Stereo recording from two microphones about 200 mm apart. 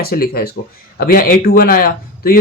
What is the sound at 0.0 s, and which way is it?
Speech, 50° left (ahead or behind).